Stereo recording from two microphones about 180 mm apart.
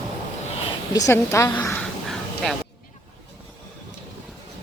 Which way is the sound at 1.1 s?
15° left (ahead or behind).